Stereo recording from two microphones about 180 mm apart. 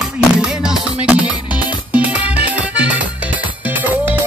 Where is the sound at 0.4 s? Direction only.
5° right (ahead or behind).